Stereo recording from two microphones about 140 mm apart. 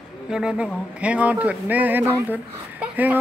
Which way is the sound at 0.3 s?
5° right (ahead or behind).